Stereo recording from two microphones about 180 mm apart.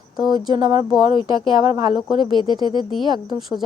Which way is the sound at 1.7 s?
20° right (ahead or behind).